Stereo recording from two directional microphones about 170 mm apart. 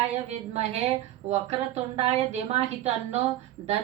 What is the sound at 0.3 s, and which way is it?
A woman's voice, 40° right (ahead or behind).